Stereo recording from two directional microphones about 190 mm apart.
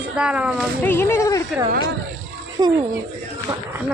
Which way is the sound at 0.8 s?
10° left (ahead or behind).